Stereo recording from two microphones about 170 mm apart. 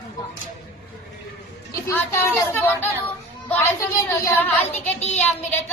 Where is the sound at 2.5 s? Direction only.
10° left (ahead or behind).